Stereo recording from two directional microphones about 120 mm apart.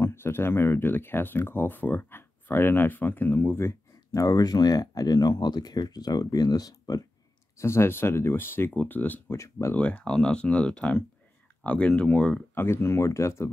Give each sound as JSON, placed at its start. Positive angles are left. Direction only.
{"t": 0.0, "sound": "speech", "side_deg": 20}
{"t": 9.8, "sound": "speech", "side_deg": 10}
{"t": 12.6, "sound": "speech", "side_deg": 20}